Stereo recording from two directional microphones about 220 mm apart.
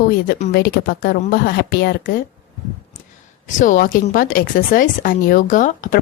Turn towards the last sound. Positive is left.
turn(degrees=35)  # may be behind; listen again after turning